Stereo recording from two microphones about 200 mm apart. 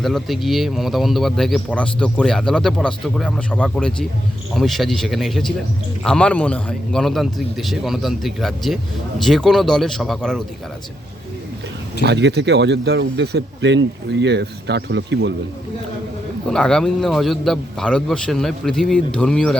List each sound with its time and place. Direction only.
0.0 s speech: centre (ahead or behind)
12.0 s speech: 60° right (ahead or behind)
16.5 s speech: 5° left (ahead or behind)